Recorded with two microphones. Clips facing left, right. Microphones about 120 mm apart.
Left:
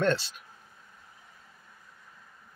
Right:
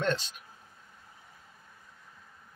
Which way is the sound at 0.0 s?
15° right (ahead or behind).